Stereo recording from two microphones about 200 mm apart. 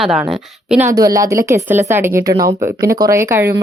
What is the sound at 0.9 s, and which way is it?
Speech, 15° right (ahead or behind).